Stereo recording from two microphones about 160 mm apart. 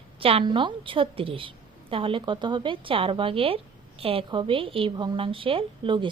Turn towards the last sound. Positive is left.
turn(degrees=-30)  # may be behind; listen again after turning